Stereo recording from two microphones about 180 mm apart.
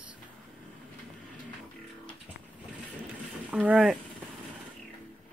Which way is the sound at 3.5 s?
5° right (ahead or behind).